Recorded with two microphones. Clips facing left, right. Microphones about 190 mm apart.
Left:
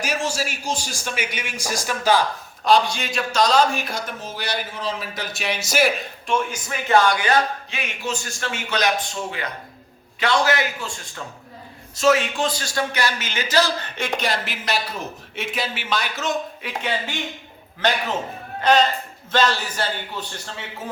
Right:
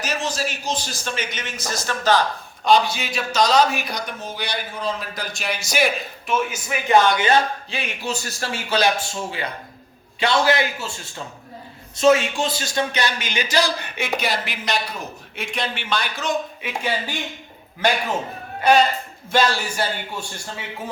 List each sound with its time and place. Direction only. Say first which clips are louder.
0.0 s a man's voice: even; 10° left (ahead or behind)
2.6 s a man's voice: even; 5° right (ahead or behind); by 8.9 s 30° right (ahead or behind)
10.2 s a man's voice: right 1 dB; 25° right (ahead or behind)
11.9 s a man's voice: right 2 dB; 25° right (ahead or behind); by 20.7 s 10° right (ahead or behind)